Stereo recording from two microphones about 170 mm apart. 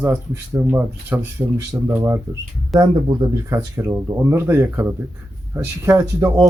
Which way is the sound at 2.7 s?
25° right (ahead or behind).